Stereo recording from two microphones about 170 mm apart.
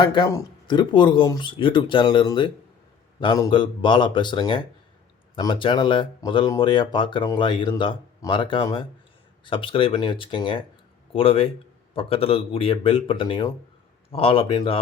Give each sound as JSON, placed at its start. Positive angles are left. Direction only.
{"t": 0.0, "sound": "speech", "side_deg": 25}